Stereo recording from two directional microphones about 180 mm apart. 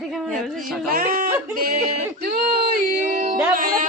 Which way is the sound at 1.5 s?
55° right (ahead or behind).